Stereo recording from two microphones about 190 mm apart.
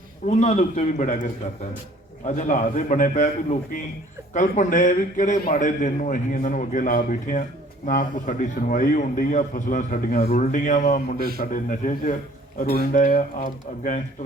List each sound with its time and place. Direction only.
0.3 s a man's voice: 40° left (ahead or behind)
2.2 s a man's voice: 40° left (ahead or behind)